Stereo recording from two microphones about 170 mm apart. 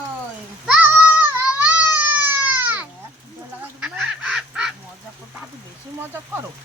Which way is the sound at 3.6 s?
5° right (ahead or behind).